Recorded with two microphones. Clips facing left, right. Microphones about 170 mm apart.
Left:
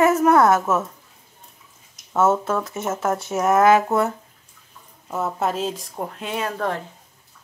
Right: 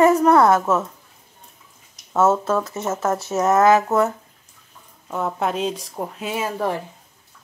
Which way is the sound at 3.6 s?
25° left (ahead or behind).